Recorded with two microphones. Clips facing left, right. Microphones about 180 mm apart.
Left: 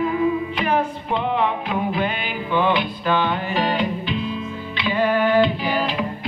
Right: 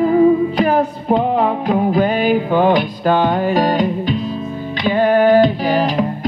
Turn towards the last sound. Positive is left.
turn(degrees=-40)  # may be behind; listen again after turning